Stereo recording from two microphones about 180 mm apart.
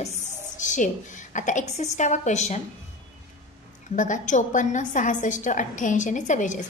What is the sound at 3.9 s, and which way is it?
A woman's voice, 45° left (ahead or behind).